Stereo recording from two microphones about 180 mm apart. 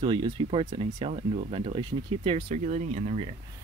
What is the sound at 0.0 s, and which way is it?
Speech, 25° right (ahead or behind).